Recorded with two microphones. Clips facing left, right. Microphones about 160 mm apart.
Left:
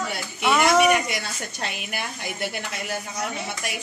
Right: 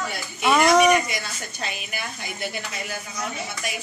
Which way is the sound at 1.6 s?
65° left (ahead or behind).